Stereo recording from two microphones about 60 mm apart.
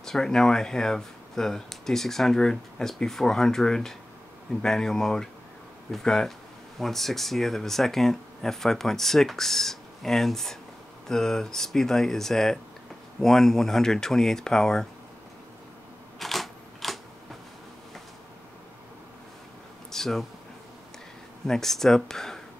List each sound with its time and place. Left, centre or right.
0.0 s speech: centre
16.2 s camera: centre
19.9 s a sound: centre
21.5 s speech: centre